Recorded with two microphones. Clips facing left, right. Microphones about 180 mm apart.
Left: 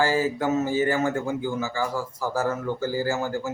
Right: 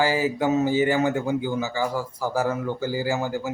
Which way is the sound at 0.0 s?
15° right (ahead or behind).